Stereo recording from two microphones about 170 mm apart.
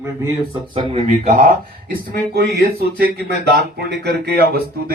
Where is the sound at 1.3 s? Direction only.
55° right (ahead or behind).